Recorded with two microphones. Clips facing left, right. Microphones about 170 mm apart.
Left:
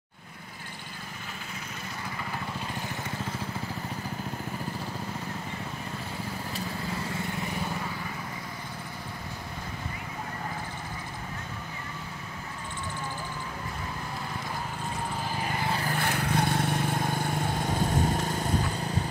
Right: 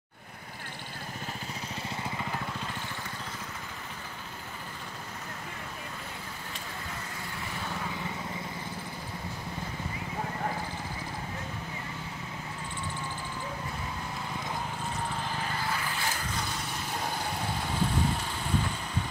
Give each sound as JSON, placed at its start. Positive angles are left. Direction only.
{"t": 15.4, "sound": "vehicle", "side_deg": 20}
{"t": 15.9, "sound": "vehicle", "side_deg": 60}